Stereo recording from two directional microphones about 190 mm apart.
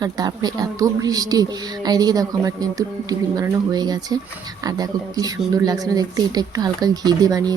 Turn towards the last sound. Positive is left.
turn(degrees=-20)  # may be behind; listen again after turning